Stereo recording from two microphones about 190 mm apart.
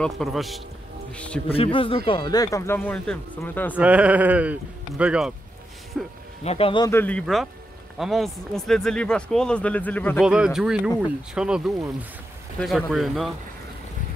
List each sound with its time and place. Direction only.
0.0 s speech: centre (ahead or behind)
1.5 s speech: 30° left (ahead or behind); by 3.7 s 10° left (ahead or behind)
3.7 s speech: 5° right (ahead or behind)
6.4 s speech: 30° left (ahead or behind)
6.9 s speech: 10° left (ahead or behind)
10.2 s speech: 5° right (ahead or behind)